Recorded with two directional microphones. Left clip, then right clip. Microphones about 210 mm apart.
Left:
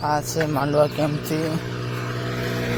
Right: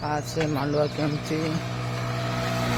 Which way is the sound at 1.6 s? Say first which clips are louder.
Left 2 dB; 50° right (ahead or behind).